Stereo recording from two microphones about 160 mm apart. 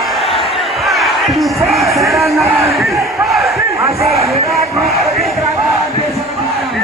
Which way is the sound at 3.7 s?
20° right (ahead or behind).